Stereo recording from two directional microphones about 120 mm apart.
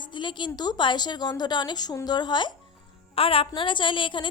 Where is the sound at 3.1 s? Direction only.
50° left (ahead or behind).